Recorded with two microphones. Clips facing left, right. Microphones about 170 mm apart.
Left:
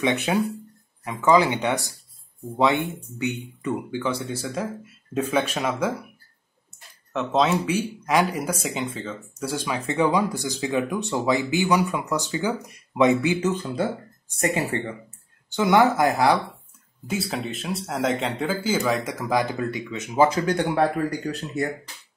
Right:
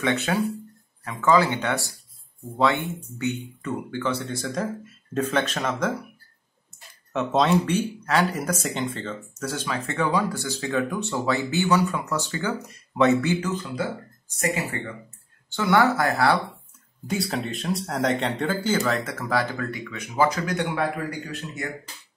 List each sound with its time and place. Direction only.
0.0 s speech: 15° left (ahead or behind)
7.1 s speech: centre (ahead or behind); by 13.5 s 15° left (ahead or behind)
14.4 s speech: 30° left (ahead or behind)
15.5 s speech: 15° left (ahead or behind)
17.1 s speech: centre (ahead or behind); by 21.6 s 35° left (ahead or behind)